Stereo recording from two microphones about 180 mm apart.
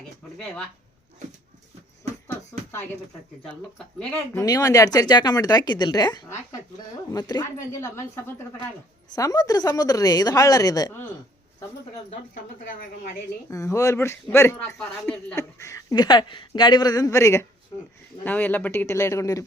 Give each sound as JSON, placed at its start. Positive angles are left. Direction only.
{"t": 4.4, "sound": "speech", "side_deg": 20}
{"t": 13.5, "sound": "speech", "side_deg": 15}